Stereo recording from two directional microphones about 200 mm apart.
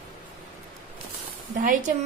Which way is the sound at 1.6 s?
40° right (ahead or behind).